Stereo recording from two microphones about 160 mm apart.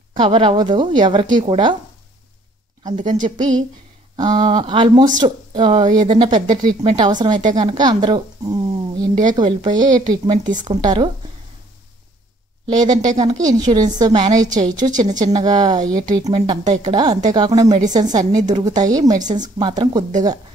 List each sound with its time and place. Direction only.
0.1 s a woman's voice: 35° right (ahead or behind)
3.3 s a woman's voice: 25° right (ahead or behind)
12.6 s a woman's voice: 25° right (ahead or behind)
14.9 s speech: 50° right (ahead or behind)
15.3 s a woman's voice: 25° right (ahead or behind)